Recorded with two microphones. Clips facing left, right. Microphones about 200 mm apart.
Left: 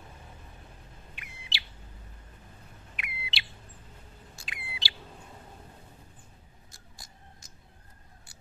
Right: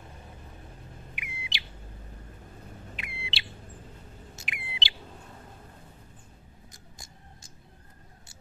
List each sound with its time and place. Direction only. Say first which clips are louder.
1.1 s bird: right 2 dB; 15° right (ahead or behind)
3.0 s a sound: left 2 dB; 25° right (ahead or behind)
4.4 s bird: right 2 dB; 25° right (ahead or behind)